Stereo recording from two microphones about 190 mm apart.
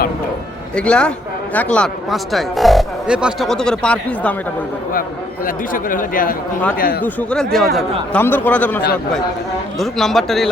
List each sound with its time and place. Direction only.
0.8 s speech: 5° left (ahead or behind)
5.5 s speech: 45° left (ahead or behind)
7.0 s speech: 5° left (ahead or behind)